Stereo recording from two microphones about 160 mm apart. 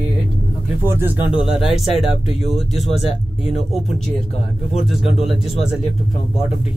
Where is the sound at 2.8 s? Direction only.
40° left (ahead or behind).